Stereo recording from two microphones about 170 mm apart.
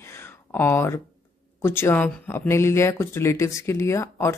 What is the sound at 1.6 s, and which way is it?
Speech, 15° left (ahead or behind).